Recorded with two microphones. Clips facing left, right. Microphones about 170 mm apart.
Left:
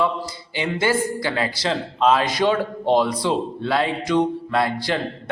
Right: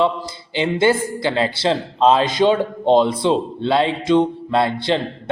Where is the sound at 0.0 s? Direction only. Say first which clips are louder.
Right 3 dB; 25° right (ahead or behind).